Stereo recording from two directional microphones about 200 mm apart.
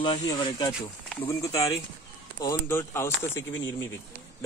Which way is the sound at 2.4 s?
15° left (ahead or behind).